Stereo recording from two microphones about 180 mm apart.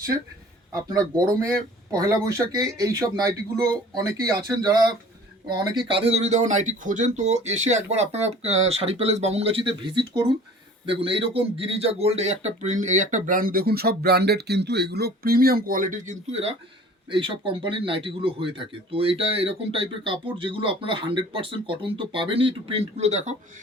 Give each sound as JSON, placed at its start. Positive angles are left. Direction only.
{"t": 1.9, "sound": "a man's voice", "side_deg": -20}